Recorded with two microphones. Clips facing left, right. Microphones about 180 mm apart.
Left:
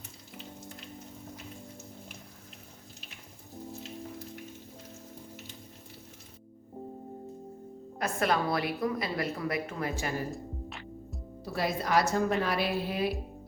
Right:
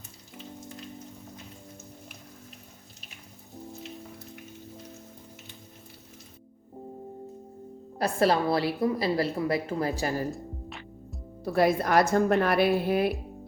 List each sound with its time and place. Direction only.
7.9 s a woman's voice: 35° right (ahead or behind)
10.3 s music: centre (ahead or behind)
11.5 s a woman's voice: 55° right (ahead or behind)